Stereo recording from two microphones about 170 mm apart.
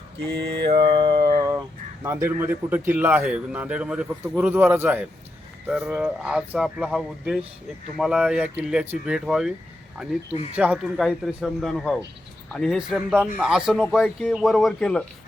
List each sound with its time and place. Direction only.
0.7 s music: 30° right (ahead or behind)
1.4 s a sound: 20° right (ahead or behind)
2.0 s speech: 15° right (ahead or behind)
10.5 s speech: 5° right (ahead or behind)